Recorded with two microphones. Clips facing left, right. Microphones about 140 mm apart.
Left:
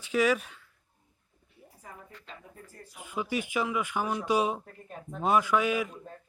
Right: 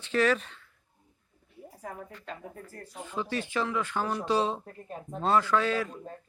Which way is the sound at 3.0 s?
10° left (ahead or behind).